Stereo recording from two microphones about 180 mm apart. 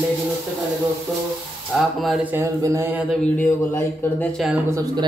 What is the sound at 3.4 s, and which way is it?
Speech, 10° left (ahead or behind).